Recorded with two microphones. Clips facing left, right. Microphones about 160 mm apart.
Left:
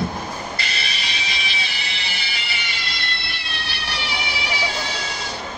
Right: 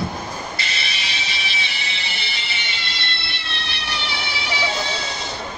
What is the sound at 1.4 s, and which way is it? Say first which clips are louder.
Music: even; 40° left (ahead or behind).